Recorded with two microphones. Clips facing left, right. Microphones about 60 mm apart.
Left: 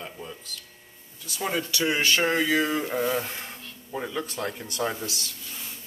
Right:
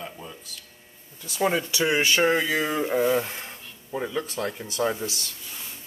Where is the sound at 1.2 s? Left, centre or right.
Right.